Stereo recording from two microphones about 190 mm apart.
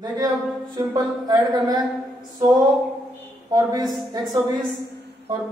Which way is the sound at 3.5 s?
20° right (ahead or behind).